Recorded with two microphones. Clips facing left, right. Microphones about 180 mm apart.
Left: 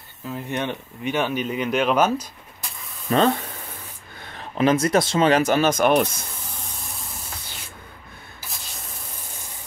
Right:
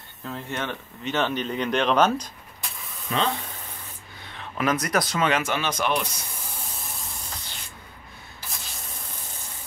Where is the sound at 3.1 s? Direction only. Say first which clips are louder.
Left 7 dB; 40° left (ahead or behind).